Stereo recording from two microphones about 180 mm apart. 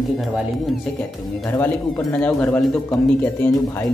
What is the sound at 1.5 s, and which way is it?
Speech, 15° left (ahead or behind).